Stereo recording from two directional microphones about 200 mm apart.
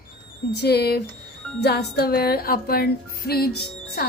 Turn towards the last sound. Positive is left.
turn(degrees=50)  # may be behind; listen again after turning